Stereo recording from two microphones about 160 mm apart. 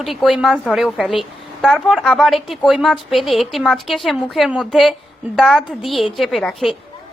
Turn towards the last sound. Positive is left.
turn(degrees=0)  # may be behind; listen again after turning